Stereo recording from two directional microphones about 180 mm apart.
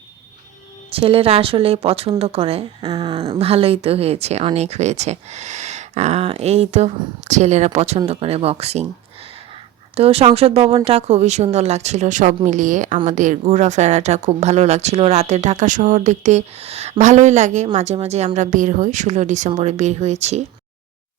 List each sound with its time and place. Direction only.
0.9 s speech: 30° right (ahead or behind)
9.9 s a woman's voice: 35° right (ahead or behind)